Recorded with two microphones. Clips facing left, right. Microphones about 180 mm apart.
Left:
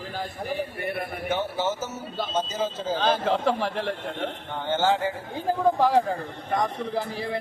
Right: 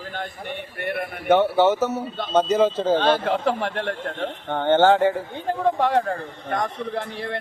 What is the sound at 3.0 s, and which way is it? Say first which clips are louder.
Speech: right 3 dB; centre (ahead or behind).